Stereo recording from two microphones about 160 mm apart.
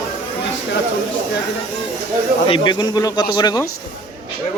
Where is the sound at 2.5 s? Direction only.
30° left (ahead or behind).